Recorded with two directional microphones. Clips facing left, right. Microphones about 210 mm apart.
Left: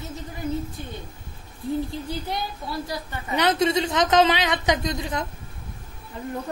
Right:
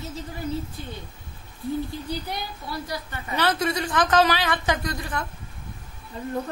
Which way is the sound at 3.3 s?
20° left (ahead or behind).